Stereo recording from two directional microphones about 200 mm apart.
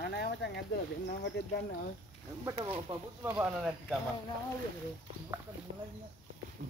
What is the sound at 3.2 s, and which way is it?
Speech, 10° right (ahead or behind).